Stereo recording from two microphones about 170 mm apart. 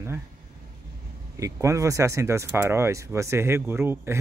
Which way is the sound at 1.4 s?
20° right (ahead or behind).